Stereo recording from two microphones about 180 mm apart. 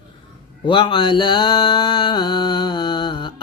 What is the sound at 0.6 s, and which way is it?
Mantra, 25° left (ahead or behind).